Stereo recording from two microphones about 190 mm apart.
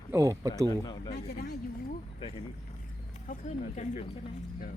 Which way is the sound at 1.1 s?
55° left (ahead or behind).